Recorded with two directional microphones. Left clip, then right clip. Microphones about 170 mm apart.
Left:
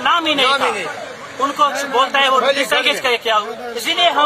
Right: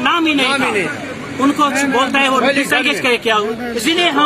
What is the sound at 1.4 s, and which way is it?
A man's voice, centre (ahead or behind).